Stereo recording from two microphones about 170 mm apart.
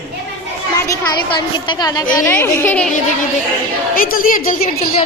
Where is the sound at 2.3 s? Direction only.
15° left (ahead or behind).